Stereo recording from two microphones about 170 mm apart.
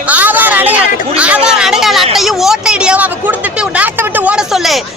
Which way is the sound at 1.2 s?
5° right (ahead or behind).